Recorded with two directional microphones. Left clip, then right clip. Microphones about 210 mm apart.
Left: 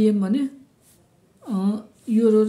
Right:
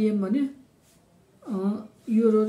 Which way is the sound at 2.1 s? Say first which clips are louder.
Left 3 dB; 45° left (ahead or behind).